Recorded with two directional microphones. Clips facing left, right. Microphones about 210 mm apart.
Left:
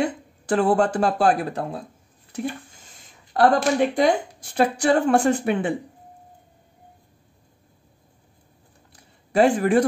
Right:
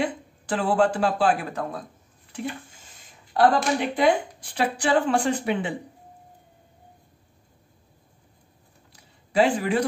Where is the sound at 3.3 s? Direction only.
45° left (ahead or behind).